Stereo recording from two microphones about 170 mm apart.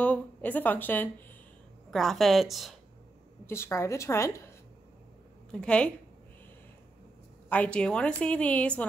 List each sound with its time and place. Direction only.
0.0 s a woman's voice: 10° left (ahead or behind)
3.4 s speech: 15° left (ahead or behind)
5.5 s speech: 5° left (ahead or behind)
7.4 s speech: 10° left (ahead or behind)